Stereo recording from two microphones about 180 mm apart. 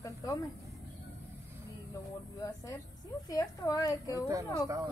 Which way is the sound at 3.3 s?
20° left (ahead or behind).